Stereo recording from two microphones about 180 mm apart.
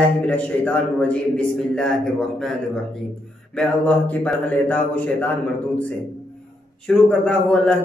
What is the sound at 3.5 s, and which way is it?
A man's voice, 5° left (ahead or behind).